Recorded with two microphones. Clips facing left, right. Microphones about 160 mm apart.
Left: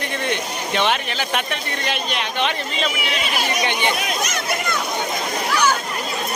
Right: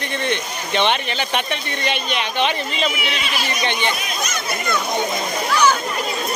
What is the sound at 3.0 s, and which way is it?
Speech, 45° left (ahead or behind).